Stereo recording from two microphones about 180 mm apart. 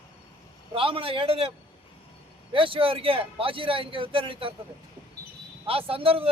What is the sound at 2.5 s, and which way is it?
A man's voice, 30° right (ahead or behind).